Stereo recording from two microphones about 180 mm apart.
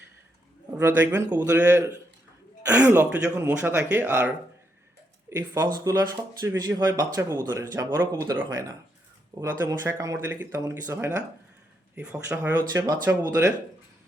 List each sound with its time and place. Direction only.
0.8 s speech: 15° right (ahead or behind)
5.3 s speech: 15° right (ahead or behind)
12.5 s speech: 20° right (ahead or behind)